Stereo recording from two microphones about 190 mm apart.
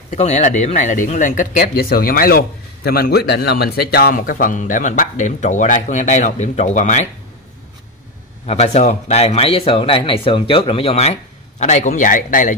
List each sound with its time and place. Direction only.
0.1 s speech: 35° left (ahead or behind)
8.5 s speech: 35° left (ahead or behind)